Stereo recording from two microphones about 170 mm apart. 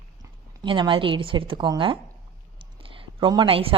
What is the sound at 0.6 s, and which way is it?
A woman's voice, 30° right (ahead or behind).